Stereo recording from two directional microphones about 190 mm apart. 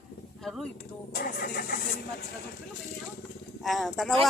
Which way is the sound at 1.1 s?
55° left (ahead or behind).